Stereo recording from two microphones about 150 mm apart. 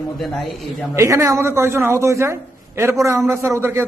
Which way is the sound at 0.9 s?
20° right (ahead or behind).